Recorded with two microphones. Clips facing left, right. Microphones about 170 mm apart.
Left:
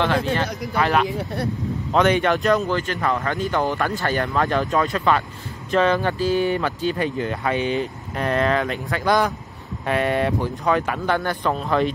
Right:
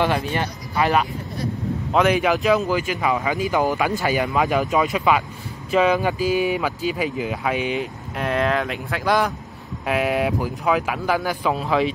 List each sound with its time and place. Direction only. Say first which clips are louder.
0.0 s speech: left 1 dB; 15° right (ahead or behind)
1.0 s speech: left 4 dB; 75° left (ahead or behind)
1.9 s speech: even; 5° right (ahead or behind)